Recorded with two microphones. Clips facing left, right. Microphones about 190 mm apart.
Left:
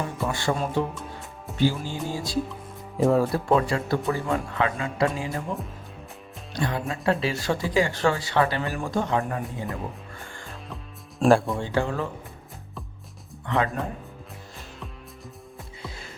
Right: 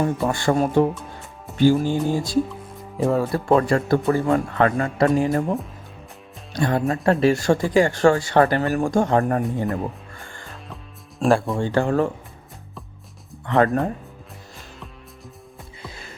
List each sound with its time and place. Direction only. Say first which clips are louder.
0.0 s speech: right 6 dB; 50° right (ahead or behind)
3.0 s speech: even; centre (ahead or behind)
3.5 s speech: right 7 dB; 50° right (ahead or behind)
6.5 s speech: right 7 dB; 50° right (ahead or behind)
11.2 s speech: right 1 dB; centre (ahead or behind)
11.7 s speech: right 7 dB; 50° right (ahead or behind)